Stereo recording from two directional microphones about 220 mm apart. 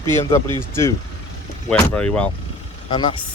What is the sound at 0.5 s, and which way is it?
Speech, 10° left (ahead or behind).